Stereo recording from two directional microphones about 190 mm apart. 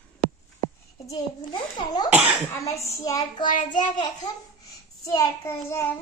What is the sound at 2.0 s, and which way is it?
Cough, 5° right (ahead or behind).